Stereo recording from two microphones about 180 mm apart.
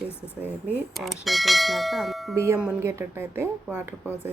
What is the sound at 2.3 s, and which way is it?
A woman's voice, 15° right (ahead or behind).